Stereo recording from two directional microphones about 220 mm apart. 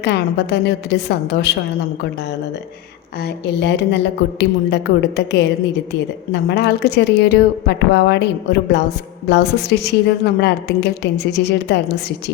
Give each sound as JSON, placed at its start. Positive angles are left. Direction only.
{"t": 0.0, "sound": "a woman's voice", "side_deg": 50}
{"t": 3.2, "sound": "a woman's voice", "side_deg": 50}